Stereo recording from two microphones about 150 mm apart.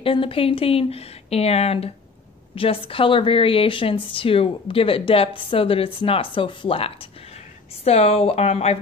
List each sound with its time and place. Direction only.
0.0 s a woman's voice: 35° left (ahead or behind)